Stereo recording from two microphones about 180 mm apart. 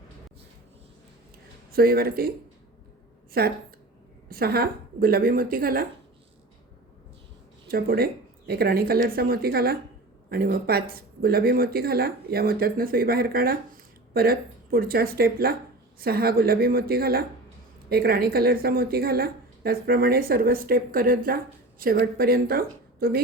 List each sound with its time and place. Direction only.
1.7 s a woman's voice: 55° right (ahead or behind)
4.3 s a woman's voice: 55° right (ahead or behind)
7.7 s a woman's voice: 55° right (ahead or behind)